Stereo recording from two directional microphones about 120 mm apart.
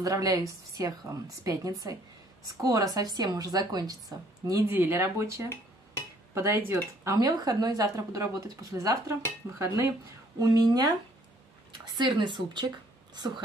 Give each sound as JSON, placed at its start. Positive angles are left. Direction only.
{"t": 0.0, "sound": "speech", "side_deg": -30}
{"t": 10.4, "sound": "speech", "side_deg": -35}